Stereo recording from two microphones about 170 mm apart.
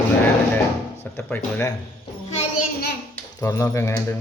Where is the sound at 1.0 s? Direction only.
10° left (ahead or behind).